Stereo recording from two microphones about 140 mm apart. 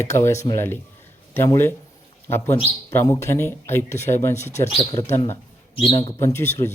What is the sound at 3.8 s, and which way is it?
Speech, 55° left (ahead or behind).